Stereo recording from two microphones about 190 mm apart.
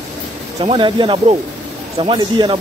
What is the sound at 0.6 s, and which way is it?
Speech, 25° right (ahead or behind).